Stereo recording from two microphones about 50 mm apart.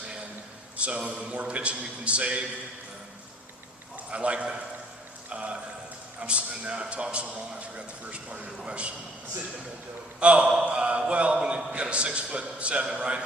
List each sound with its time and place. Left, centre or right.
0.8 s a man's voice: right
4.1 s a man's voice: right
10.2 s a man's voice: right